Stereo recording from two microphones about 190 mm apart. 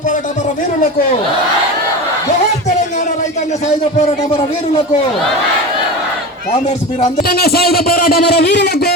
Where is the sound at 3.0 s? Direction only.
40° left (ahead or behind).